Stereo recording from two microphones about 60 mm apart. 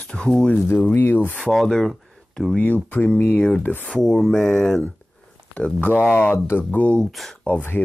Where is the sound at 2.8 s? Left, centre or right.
Left.